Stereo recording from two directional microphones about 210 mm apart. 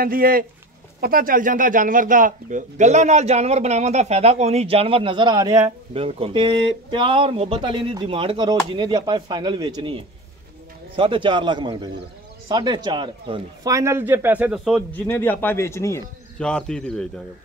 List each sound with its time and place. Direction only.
0.0 s speech: 45° right (ahead or behind); by 14.8 s 5° right (ahead or behind)
14.9 s speech: 10° left (ahead or behind)